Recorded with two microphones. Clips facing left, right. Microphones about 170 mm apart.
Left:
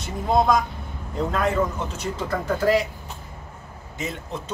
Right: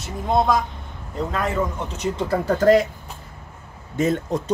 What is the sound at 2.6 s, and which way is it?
Speech, 50° right (ahead or behind).